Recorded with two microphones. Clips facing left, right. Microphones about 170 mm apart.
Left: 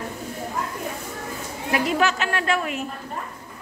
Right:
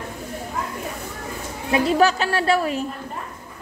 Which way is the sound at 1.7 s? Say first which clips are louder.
Right 4 dB; 35° right (ahead or behind).